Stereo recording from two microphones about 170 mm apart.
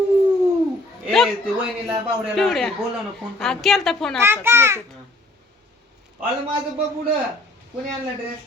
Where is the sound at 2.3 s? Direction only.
Centre (ahead or behind).